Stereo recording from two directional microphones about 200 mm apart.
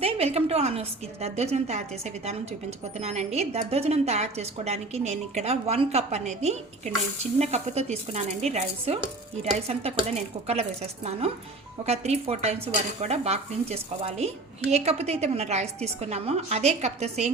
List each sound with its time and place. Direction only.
0.0 s a woman's voice: 30° right (ahead or behind)